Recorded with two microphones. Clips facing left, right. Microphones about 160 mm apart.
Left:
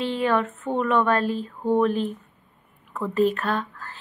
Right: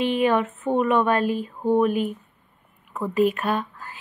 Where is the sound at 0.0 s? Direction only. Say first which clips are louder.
Right 2 dB; 15° right (ahead or behind).